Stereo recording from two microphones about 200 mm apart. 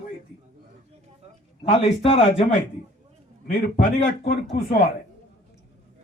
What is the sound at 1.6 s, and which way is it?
Speech, 30° left (ahead or behind).